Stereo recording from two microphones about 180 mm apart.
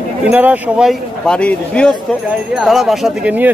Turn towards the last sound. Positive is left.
turn(degrees=-5)  # may be behind; listen again after turning